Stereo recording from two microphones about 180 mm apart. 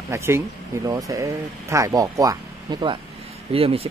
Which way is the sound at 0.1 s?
15° right (ahead or behind).